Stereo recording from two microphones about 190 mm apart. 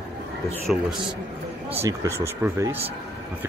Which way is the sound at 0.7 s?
Centre (ahead or behind).